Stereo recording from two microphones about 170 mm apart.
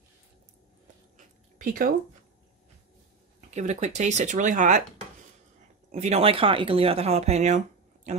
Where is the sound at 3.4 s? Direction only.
45° right (ahead or behind).